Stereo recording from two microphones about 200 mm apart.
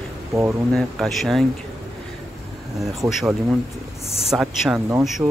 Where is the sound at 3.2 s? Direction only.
Centre (ahead or behind).